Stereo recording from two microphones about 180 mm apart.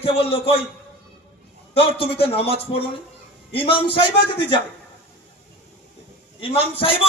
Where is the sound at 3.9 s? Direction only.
25° left (ahead or behind).